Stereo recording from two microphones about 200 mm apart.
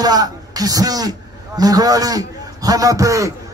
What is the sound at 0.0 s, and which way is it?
A man's voice, 20° right (ahead or behind).